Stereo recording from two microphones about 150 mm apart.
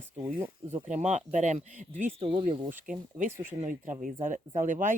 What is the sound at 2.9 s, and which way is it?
Speech, 65° right (ahead or behind).